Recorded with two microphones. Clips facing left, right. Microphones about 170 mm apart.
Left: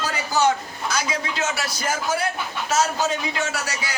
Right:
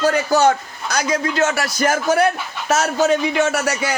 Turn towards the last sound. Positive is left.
turn(degrees=-60)  # may be behind; listen again after turning